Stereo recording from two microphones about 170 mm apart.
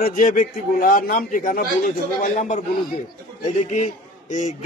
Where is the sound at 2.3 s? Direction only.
40° left (ahead or behind).